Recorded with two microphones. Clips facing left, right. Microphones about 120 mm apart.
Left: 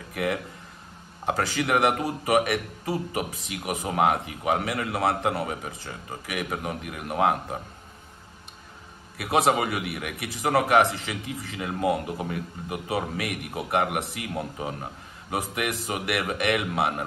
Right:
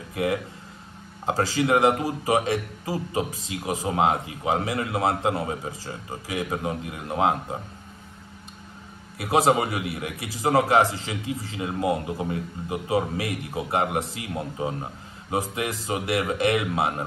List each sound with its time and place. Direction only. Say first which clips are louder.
0.1 s a man's voice: right 2 dB; 25° right (ahead or behind)
9.2 s a man's voice: right 2 dB; 30° right (ahead or behind)